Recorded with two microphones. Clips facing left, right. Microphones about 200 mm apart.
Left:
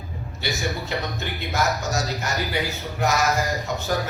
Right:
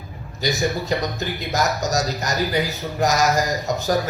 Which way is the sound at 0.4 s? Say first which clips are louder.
Right 6 dB; 40° right (ahead or behind).